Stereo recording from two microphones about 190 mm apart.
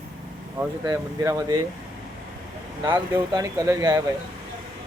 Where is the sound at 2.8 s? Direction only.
20° right (ahead or behind).